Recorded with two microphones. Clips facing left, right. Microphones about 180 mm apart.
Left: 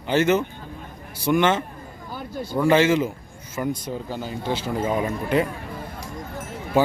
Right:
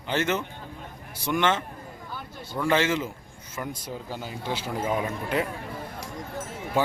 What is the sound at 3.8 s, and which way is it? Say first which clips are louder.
Speech: left 5 dB; 10° right (ahead or behind).